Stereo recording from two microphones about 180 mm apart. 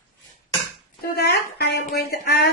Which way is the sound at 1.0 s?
60° left (ahead or behind).